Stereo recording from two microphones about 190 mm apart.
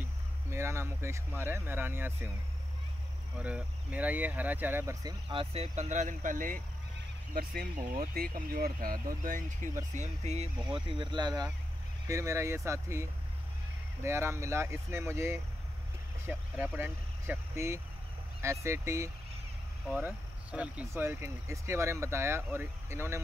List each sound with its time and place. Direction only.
0.5 s speech: 15° right (ahead or behind)
3.3 s speech: 5° right (ahead or behind)
5.3 s speech: 30° right (ahead or behind); by 6.6 s 45° right (ahead or behind)
8.1 s speech: 50° right (ahead or behind); by 23.2 s 15° right (ahead or behind)